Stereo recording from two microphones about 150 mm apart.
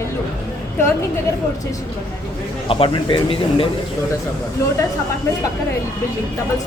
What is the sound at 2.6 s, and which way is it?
Speech, 35° left (ahead or behind).